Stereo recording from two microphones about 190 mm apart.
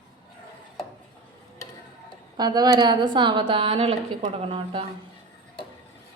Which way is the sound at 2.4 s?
20° right (ahead or behind).